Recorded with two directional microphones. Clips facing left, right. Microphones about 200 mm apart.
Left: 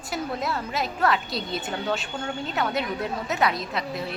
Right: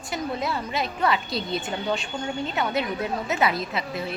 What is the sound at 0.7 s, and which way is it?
Speech, centre (ahead or behind).